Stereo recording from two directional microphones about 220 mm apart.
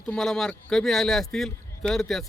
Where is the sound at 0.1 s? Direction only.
Centre (ahead or behind).